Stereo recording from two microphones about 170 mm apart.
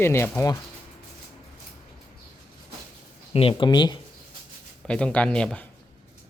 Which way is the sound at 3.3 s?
30° left (ahead or behind).